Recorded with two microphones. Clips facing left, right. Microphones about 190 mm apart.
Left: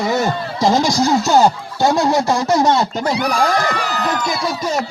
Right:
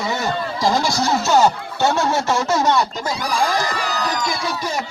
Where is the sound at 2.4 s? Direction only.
15° left (ahead or behind).